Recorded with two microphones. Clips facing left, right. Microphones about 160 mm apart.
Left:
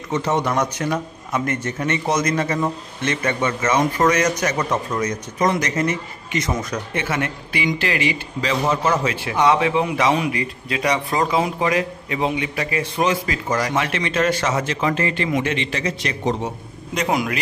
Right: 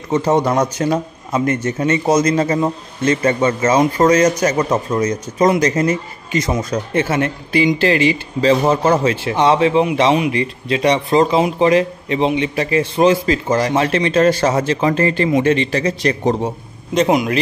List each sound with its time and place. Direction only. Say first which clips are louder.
0.1 s a man's voice: right 6 dB; 35° right (ahead or behind)
16.9 s speech: right 7 dB; 25° right (ahead or behind)